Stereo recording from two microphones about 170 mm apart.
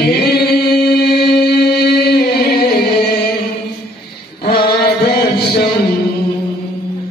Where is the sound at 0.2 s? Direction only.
65° left (ahead or behind).